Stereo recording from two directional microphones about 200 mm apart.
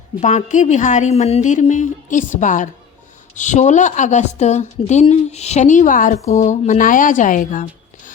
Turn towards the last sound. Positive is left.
turn(degrees=40)  # may be behind; listen again after turning